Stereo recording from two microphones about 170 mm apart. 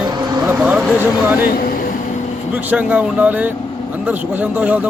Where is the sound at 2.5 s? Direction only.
10° right (ahead or behind).